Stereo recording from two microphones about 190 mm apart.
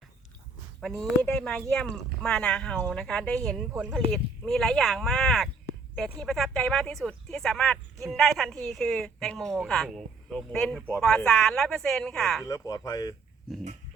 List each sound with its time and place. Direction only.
0.8 s speech: centre (ahead or behind)
12.5 s speech: 15° left (ahead or behind)
13.5 s speech: centre (ahead or behind)